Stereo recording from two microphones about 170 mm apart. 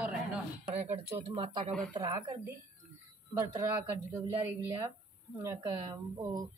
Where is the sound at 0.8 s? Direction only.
35° right (ahead or behind); by 2.5 s 20° right (ahead or behind).